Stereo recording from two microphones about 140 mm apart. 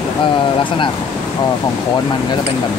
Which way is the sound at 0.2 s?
35° left (ahead or behind).